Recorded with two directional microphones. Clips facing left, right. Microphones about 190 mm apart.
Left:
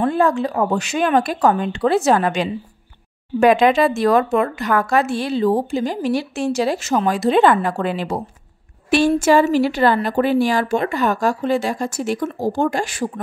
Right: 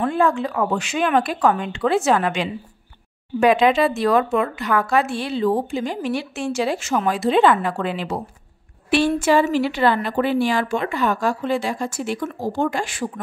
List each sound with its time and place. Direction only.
0.0 s a woman's voice: 40° left (ahead or behind)